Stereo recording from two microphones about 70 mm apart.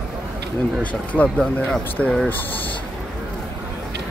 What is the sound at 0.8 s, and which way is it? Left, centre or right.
Speech, left.